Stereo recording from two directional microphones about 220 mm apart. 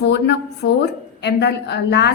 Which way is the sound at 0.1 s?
50° left (ahead or behind).